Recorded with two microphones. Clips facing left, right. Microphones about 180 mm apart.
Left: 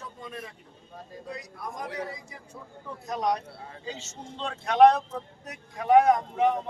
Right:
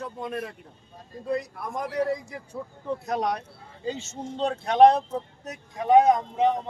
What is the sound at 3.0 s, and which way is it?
Speech, 65° right (ahead or behind).